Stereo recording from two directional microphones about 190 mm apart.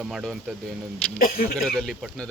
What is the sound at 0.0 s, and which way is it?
Speech, centre (ahead or behind).